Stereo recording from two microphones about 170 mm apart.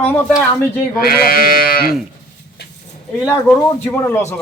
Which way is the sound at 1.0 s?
60° left (ahead or behind).